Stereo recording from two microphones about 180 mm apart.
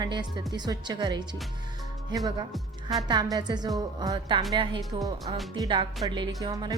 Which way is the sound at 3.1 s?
20° right (ahead or behind).